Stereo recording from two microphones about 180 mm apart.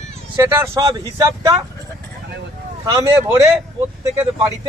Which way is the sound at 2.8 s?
20° right (ahead or behind).